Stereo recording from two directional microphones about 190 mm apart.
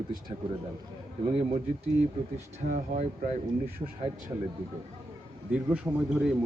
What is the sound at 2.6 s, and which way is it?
Speech, 45° right (ahead or behind).